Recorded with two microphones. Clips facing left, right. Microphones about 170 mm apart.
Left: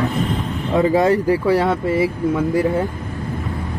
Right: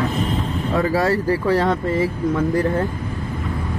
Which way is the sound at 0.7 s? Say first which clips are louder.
Left 4 dB; 20° left (ahead or behind).